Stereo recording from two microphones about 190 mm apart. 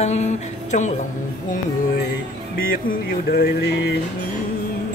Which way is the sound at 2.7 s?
50° left (ahead or behind).